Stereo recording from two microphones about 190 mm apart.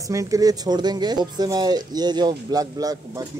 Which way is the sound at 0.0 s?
15° right (ahead or behind).